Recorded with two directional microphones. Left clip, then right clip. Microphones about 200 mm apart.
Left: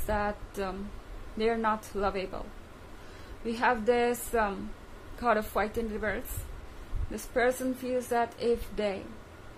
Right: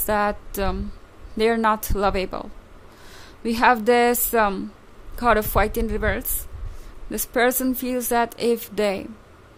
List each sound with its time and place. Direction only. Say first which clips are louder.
0.0 s a woman's voice: right 9 dB; 55° right (ahead or behind)
3.4 s a woman's voice: right 9 dB; 55° right (ahead or behind)